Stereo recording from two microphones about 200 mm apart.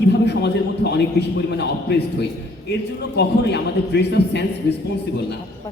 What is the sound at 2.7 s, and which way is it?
A man's voice, 55° left (ahead or behind).